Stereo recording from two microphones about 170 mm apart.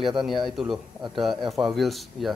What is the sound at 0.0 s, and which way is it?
A man's voice, centre (ahead or behind).